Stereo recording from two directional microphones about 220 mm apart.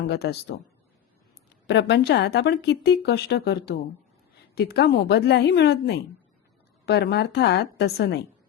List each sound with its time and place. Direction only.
0.1 s speech: 45° left (ahead or behind)
1.6 s speech: 50° left (ahead or behind)